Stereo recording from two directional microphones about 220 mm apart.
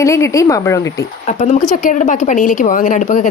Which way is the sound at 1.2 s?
35° left (ahead or behind).